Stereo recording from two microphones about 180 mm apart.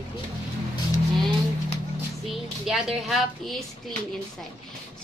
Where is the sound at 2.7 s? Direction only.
Centre (ahead or behind).